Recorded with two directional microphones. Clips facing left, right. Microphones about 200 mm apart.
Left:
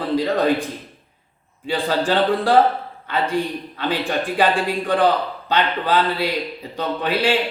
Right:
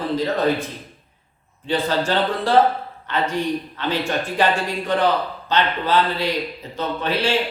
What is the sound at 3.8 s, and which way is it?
Speech, 15° left (ahead or behind).